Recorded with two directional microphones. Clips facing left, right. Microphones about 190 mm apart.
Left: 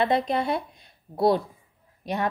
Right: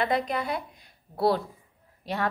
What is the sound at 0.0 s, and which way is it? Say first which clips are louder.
A woman's voice: left 4 dB; 25° left (ahead or behind).